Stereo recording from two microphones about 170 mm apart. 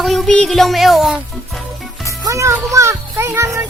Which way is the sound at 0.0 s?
Centre (ahead or behind).